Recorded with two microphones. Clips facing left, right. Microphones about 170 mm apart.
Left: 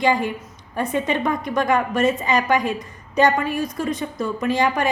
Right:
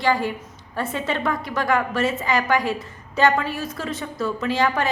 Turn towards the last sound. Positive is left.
turn(degrees=15)  # may be behind; listen again after turning